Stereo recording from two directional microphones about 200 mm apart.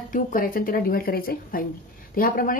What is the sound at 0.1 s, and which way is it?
Speech, 45° left (ahead or behind).